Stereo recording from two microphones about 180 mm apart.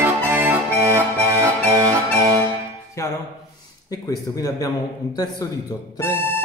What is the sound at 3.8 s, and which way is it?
Speech, 20° left (ahead or behind).